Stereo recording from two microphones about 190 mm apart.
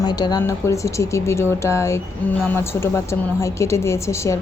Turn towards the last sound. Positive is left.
turn(degrees=15)  # may be behind; listen again after turning